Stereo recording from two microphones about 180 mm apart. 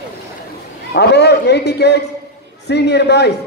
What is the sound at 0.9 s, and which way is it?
A man's voice, 70° left (ahead or behind).